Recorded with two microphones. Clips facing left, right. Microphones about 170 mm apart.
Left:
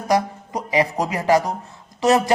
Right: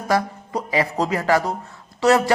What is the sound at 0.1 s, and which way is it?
Speech, 20° left (ahead or behind).